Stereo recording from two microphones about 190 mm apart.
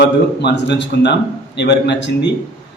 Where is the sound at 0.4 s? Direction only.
65° left (ahead or behind).